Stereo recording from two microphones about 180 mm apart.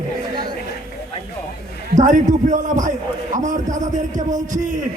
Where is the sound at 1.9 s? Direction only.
45° right (ahead or behind).